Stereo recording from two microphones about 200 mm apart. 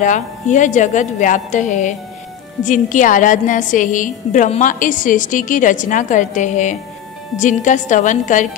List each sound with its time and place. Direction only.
0.0 s a woman's voice: 40° left (ahead or behind)